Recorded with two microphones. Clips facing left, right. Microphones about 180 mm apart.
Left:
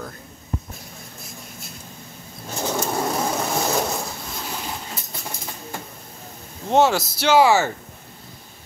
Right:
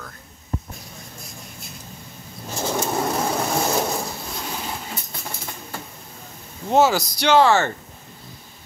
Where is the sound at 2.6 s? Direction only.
Centre (ahead or behind).